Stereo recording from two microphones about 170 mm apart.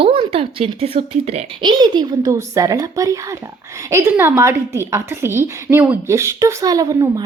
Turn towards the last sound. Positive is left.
turn(degrees=-20)  # may be behind; listen again after turning